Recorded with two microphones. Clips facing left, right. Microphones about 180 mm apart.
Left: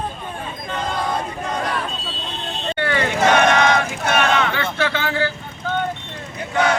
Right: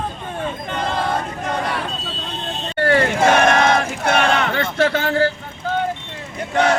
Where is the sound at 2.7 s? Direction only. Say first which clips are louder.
Right 5 dB; 40° right (ahead or behind).